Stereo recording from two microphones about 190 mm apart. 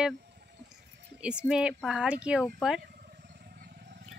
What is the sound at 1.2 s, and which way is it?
Speech, 5° right (ahead or behind).